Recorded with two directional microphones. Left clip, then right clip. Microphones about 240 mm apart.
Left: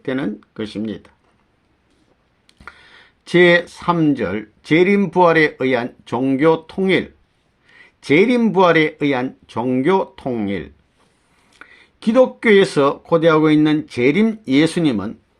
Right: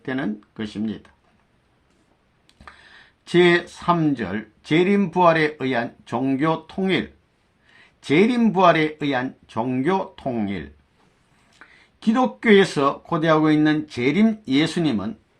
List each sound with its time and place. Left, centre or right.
0.0 s speech: left
2.5 s speech: left